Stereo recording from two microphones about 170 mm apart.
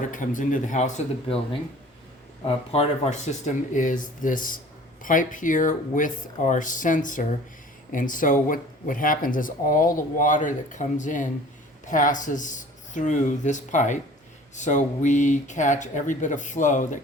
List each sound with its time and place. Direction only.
0.1 s speech: 50° left (ahead or behind)
2.4 s speech: 35° left (ahead or behind)